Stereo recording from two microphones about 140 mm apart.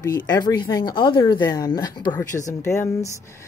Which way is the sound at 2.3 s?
60° left (ahead or behind).